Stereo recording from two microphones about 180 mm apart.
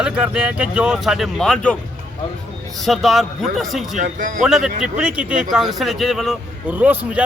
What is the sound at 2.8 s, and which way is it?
Speech, centre (ahead or behind).